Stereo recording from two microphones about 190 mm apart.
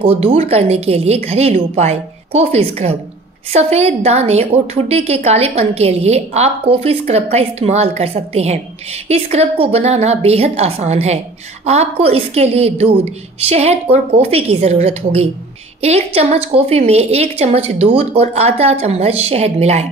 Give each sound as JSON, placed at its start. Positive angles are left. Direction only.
{"t": 0.0, "sound": "a woman's voice", "side_deg": -30}